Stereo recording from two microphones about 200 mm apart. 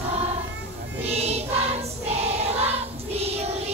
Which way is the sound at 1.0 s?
30° right (ahead or behind).